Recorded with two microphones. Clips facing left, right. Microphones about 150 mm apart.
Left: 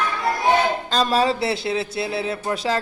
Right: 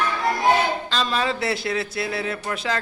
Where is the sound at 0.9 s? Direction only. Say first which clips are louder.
Left 7 dB; 40° left (ahead or behind).